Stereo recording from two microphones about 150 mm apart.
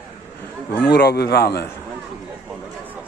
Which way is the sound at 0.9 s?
90° left.